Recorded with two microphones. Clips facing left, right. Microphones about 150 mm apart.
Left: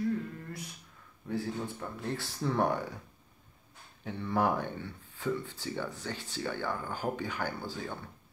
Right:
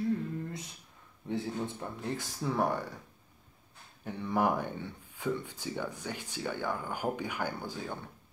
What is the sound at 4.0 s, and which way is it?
Speech, 10° right (ahead or behind).